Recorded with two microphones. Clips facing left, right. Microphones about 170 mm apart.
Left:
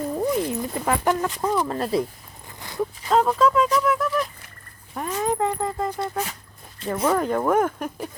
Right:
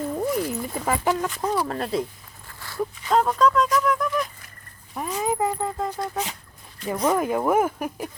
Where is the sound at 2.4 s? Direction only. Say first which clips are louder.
Left 2 dB; 20° left (ahead or behind).